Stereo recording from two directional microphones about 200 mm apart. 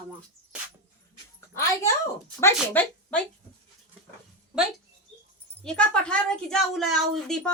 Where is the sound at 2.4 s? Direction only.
10° left (ahead or behind).